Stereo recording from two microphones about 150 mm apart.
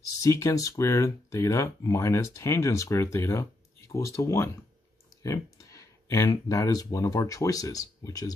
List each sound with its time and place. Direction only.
0.2 s speech: 20° left (ahead or behind)